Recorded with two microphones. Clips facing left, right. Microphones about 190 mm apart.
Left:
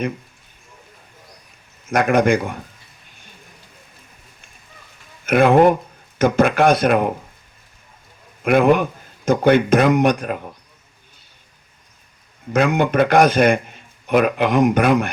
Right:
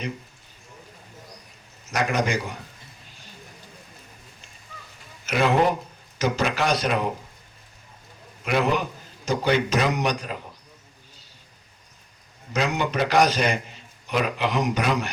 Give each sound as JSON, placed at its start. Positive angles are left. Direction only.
{"t": 1.9, "sound": "a man's voice", "side_deg": 55}
{"t": 5.2, "sound": "a man's voice", "side_deg": 55}
{"t": 8.4, "sound": "a man's voice", "side_deg": 55}
{"t": 12.5, "sound": "a man's voice", "side_deg": 55}